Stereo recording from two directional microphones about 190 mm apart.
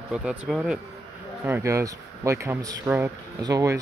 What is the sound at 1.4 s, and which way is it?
Speech, 15° right (ahead or behind).